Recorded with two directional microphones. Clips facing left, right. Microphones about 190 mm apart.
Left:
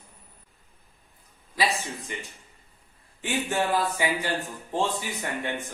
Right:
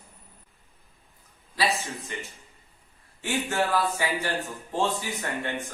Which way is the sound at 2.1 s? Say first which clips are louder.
Even; 15° left (ahead or behind).